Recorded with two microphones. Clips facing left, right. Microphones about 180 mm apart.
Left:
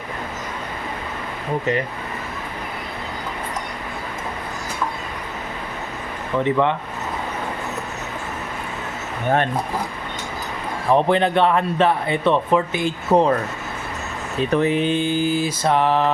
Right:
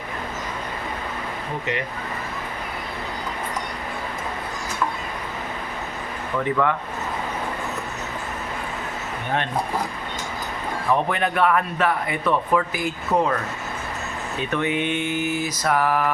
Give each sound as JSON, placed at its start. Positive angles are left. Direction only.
{"t": 6.4, "sound": "speech", "side_deg": 25}
{"t": 11.1, "sound": "speech", "side_deg": 30}